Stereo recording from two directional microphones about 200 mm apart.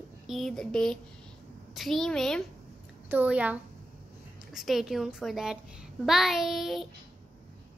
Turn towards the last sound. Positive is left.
turn(degrees=0)  # may be behind; listen again after turning